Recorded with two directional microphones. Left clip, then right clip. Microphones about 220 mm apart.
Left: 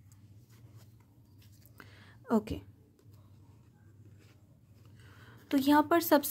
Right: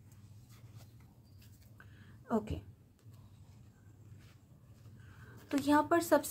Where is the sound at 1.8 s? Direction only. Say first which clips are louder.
Left 6 dB; 45° left (ahead or behind).